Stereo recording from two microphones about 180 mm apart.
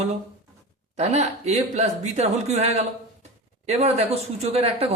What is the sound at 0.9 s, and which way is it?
Speech, 40° right (ahead or behind).